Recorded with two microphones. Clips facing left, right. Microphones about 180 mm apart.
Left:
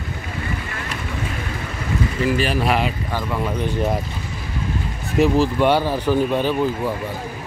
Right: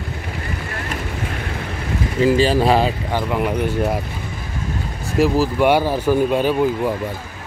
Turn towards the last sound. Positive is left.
turn(degrees=-10)  # may be behind; listen again after turning